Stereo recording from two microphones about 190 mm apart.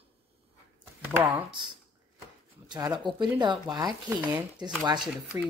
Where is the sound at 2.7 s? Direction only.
20° right (ahead or behind).